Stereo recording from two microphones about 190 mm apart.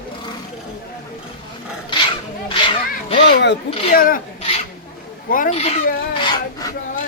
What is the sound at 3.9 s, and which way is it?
Speech, 50° left (ahead or behind).